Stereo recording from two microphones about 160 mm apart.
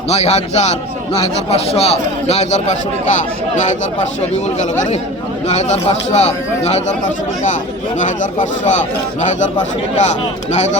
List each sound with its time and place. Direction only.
0.1 s a man's voice: 45° left (ahead or behind)
5.5 s a man's voice: 45° left (ahead or behind)
10.0 s a man's voice: 45° left (ahead or behind)